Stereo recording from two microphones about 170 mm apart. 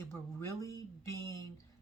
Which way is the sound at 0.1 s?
15° left (ahead or behind).